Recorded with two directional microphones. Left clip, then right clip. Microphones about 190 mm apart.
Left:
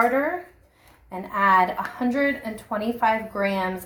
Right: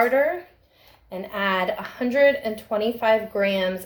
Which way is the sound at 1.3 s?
30° right (ahead or behind).